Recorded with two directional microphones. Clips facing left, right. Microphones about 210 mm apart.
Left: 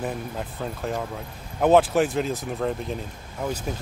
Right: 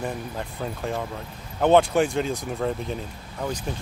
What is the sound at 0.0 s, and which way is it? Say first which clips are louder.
Speech: left 1 dB; centre (ahead or behind).